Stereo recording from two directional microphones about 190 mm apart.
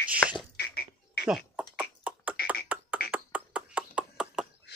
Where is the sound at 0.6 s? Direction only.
55° left (ahead or behind).